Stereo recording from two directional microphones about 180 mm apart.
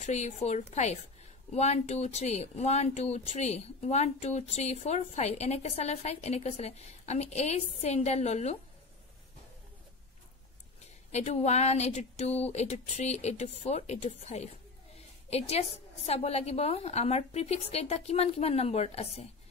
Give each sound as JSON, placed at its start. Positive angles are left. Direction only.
{"t": 0.0, "sound": "speech", "side_deg": 40}
{"t": 11.1, "sound": "speech", "side_deg": 40}
{"t": 15.0, "sound": "a sound", "side_deg": 35}
{"t": 16.1, "sound": "speech", "side_deg": 35}